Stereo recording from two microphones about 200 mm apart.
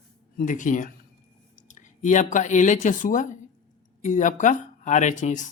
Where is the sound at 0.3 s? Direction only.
40° left (ahead or behind).